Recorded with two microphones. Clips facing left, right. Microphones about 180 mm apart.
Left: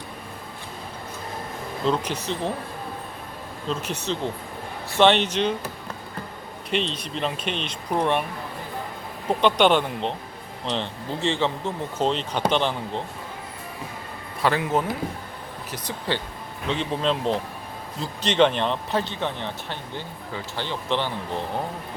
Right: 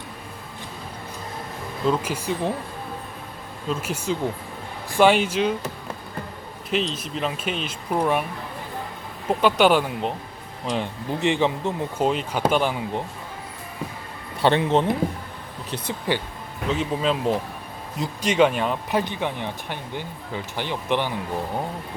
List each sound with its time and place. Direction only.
1.9 s speech: 5° right (ahead or behind)
3.7 s speech: 10° right (ahead or behind)
6.9 s speech: 5° right (ahead or behind)
9.4 s speech: 5° right (ahead or behind)
14.4 s speech: 25° right (ahead or behind)
16.1 s speech: 15° right (ahead or behind)
16.6 s speech: 5° right (ahead or behind)